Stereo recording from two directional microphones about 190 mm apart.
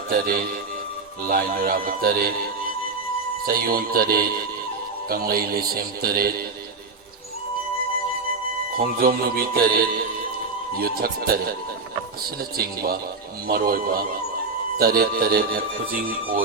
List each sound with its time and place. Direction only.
0.1 s speech: 50° right (ahead or behind)
3.4 s speech: 50° right (ahead or behind)
8.8 s speech: 50° right (ahead or behind)
10.9 s speech: 50° right (ahead or behind)